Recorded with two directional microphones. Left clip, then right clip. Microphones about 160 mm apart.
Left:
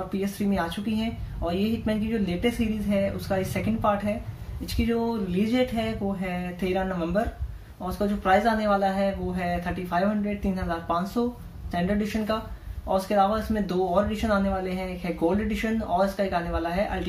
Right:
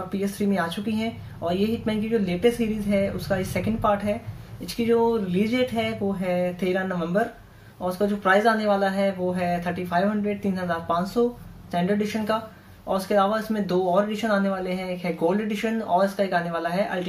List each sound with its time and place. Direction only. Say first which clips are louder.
0.2 s speech: right 3 dB; 20° right (ahead or behind)